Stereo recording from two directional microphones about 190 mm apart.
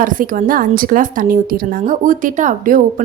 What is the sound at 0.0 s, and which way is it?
A woman's voice, 45° right (ahead or behind).